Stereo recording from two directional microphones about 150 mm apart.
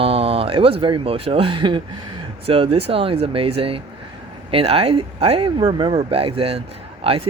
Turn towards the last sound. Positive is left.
turn(degrees=-40)  # may be behind; listen again after turning